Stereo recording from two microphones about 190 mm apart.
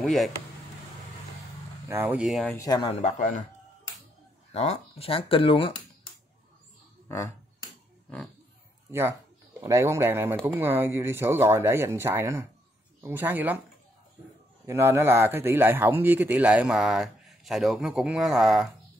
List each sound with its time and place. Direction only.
0.0 s speech: centre (ahead or behind)
1.9 s speech: 10° right (ahead or behind)
2.5 s speech: 20° left (ahead or behind)
2.9 s speech: 35° left (ahead or behind)
4.5 s speech: 35° left (ahead or behind)
7.1 s speech: 15° left (ahead or behind)
9.6 s a man's voice: 15° right (ahead or behind)
14.7 s a man's voice: 15° right (ahead or behind)